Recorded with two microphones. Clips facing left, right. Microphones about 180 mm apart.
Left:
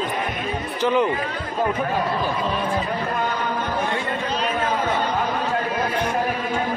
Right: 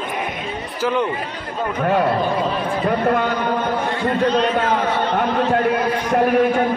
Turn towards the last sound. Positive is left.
turn(degrees=-65)  # may be behind; listen again after turning